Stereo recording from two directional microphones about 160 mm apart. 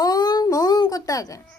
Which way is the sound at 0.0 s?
25° left (ahead or behind).